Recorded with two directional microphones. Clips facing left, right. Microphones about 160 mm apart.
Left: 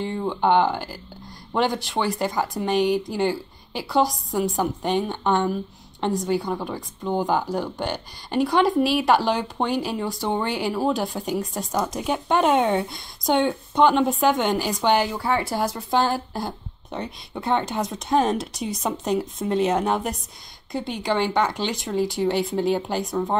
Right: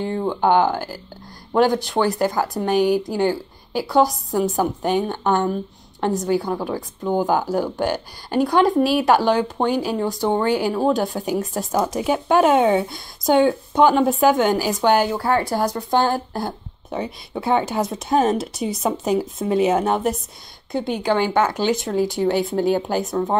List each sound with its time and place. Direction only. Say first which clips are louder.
0.2 s speech: right 2 dB; 5° right (ahead or behind)
15.1 s speech: right 4 dB; 45° right (ahead or behind)
15.4 s speech: right 4 dB; centre (ahead or behind)